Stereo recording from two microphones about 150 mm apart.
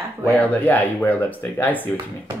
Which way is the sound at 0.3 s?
10° left (ahead or behind).